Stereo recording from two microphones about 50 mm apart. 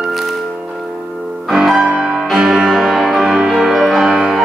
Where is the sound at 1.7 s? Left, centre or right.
Right.